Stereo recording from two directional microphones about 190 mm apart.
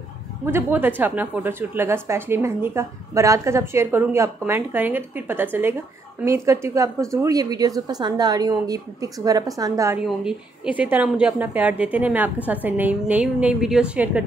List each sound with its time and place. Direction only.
0.5 s a woman's voice: 10° right (ahead or behind)
10.0 s a woman's voice: 5° right (ahead or behind)